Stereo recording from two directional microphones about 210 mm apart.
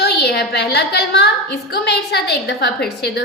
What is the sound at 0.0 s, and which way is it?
A woman's voice, 55° left (ahead or behind).